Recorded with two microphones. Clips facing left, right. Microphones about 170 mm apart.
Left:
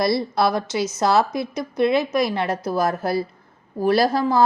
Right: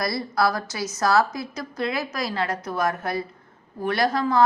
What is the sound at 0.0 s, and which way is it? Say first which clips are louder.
Speech: left 4 dB; 25° left (ahead or behind).